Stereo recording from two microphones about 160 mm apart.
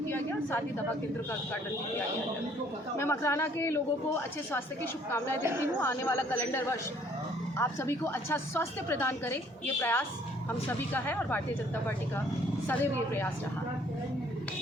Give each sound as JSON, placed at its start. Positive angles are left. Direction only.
{"t": 0.1, "sound": "a woman's voice", "side_deg": 15}
{"t": 3.0, "sound": "a woman's voice", "side_deg": 15}
{"t": 5.4, "sound": "a woman's voice", "side_deg": -15}
{"t": 5.8, "sound": "a woman's voice", "side_deg": 15}
{"t": 12.6, "sound": "a woman's voice", "side_deg": 15}